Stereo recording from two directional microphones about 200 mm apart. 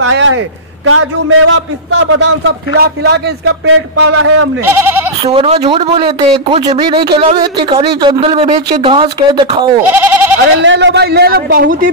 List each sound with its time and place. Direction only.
0.8 s a man's voice: 90° right; by 3.2 s 55° right (ahead or behind)
3.4 s speech: 85° right
4.6 s bleat: 10° right (ahead or behind)
5.3 s speech: 30° right (ahead or behind)
9.8 s speech: 10° right (ahead or behind)
10.6 s a man's voice: 65° right (ahead or behind); by 11.9 s 45° right (ahead or behind)